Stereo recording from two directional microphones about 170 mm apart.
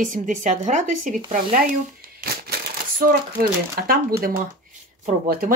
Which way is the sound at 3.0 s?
60° right (ahead or behind).